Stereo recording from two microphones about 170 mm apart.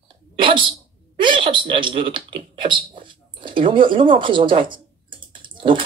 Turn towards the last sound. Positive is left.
turn(degrees=-30)  # may be behind; listen again after turning